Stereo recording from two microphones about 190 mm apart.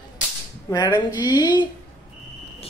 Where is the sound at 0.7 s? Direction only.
20° left (ahead or behind).